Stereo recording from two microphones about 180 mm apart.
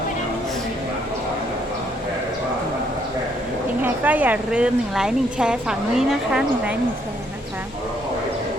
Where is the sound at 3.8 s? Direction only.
10° right (ahead or behind).